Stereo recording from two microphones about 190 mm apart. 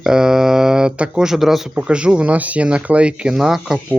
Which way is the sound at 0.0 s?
5° right (ahead or behind).